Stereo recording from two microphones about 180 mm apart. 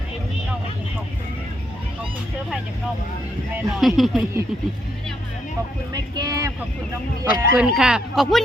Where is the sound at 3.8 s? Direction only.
Centre (ahead or behind).